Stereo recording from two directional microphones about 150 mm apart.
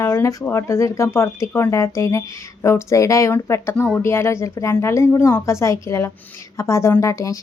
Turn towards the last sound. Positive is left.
turn(degrees=20)  # may be behind; listen again after turning